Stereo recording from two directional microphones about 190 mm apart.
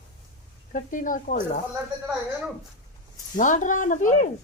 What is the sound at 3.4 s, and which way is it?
Speech, 40° left (ahead or behind).